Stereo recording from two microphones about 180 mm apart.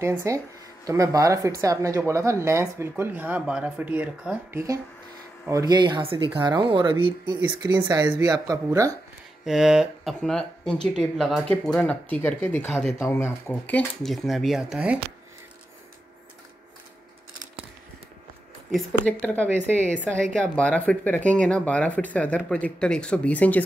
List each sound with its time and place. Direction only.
0.0 s speech: 15° right (ahead or behind)
9.4 s speech: 5° right (ahead or behind)
12.6 s speech: centre (ahead or behind)
13.0 s speech: 10° left (ahead or behind); by 15.0 s 5° right (ahead or behind)
19.0 s speech: 5° left (ahead or behind)